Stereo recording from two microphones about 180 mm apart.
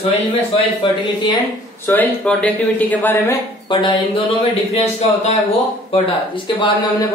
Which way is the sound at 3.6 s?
25° left (ahead or behind).